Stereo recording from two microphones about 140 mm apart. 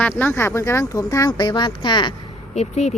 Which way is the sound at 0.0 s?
15° left (ahead or behind).